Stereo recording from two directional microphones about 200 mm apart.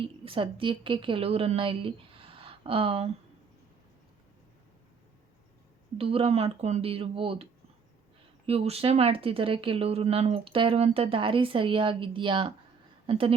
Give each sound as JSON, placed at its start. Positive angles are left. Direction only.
{"t": 0.3, "sound": "a woman's voice", "side_deg": -25}
{"t": 6.0, "sound": "speech", "side_deg": -30}
{"t": 8.4, "sound": "a woman's voice", "side_deg": -30}